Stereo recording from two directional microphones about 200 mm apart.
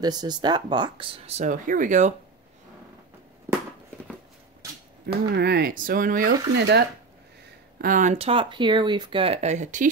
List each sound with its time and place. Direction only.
0.0 s speech: 20° right (ahead or behind); by 2.1 s 40° right (ahead or behind)
5.0 s speech: 55° right (ahead or behind)
7.8 s speech: 40° right (ahead or behind)